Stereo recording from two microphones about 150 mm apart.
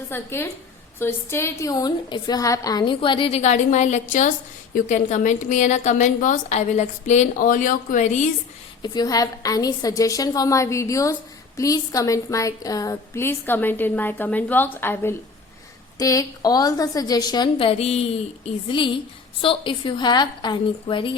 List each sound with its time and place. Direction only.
0.1 s a woman's voice: 15° left (ahead or behind); by 8.2 s 55° left (ahead or behind)
8.8 s a woman's voice: 25° left (ahead or behind); by 18.0 s 45° left (ahead or behind)
19.4 s a woman's voice: 35° left (ahead or behind)